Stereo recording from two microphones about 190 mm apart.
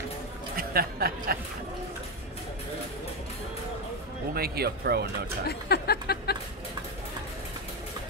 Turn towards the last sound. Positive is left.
turn(degrees=55)  # may be behind; listen again after turning